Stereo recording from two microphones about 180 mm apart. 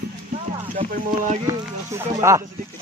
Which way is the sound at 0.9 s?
40° right (ahead or behind).